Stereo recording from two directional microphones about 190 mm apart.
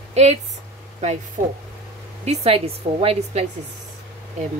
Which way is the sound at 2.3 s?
30° right (ahead or behind).